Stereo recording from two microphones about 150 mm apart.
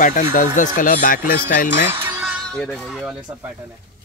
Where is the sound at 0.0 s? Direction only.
55° left (ahead or behind).